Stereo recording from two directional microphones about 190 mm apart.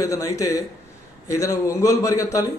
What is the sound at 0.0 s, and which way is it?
A man's voice, 15° left (ahead or behind).